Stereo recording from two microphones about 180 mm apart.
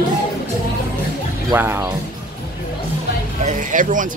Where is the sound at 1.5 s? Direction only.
15° right (ahead or behind).